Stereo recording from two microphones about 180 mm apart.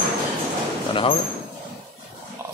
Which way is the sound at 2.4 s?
15° right (ahead or behind).